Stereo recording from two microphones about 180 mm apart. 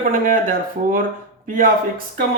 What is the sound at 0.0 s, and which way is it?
Speech, 50° right (ahead or behind).